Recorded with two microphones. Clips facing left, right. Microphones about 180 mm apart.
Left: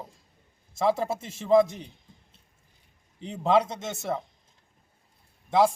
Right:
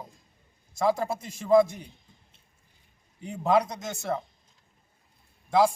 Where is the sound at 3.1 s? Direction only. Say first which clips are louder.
Left 1 dB; 25° left (ahead or behind).